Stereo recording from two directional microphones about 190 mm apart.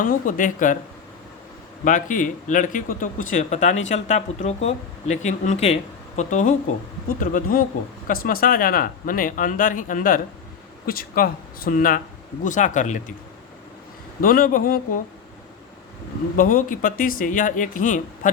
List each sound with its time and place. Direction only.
0.0 s speech: 45° left (ahead or behind)
1.8 s speech: 40° left (ahead or behind)
14.2 s speech: 45° left (ahead or behind)
16.4 s speech: 45° left (ahead or behind)